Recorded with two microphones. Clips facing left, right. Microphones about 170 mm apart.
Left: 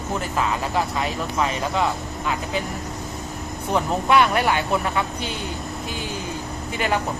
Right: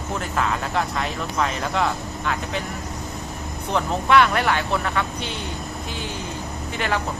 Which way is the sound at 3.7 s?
15° left (ahead or behind).